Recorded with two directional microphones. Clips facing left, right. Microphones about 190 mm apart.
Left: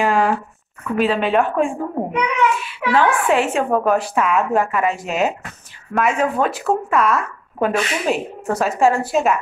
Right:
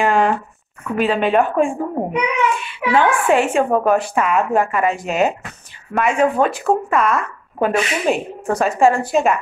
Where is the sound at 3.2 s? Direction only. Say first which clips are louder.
Right 2 dB; centre (ahead or behind).